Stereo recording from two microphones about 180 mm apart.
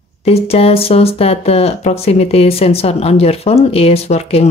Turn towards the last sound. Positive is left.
turn(degrees=35)  # may be behind; listen again after turning